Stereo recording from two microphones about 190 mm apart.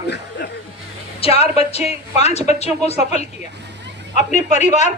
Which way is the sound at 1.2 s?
30° left (ahead or behind).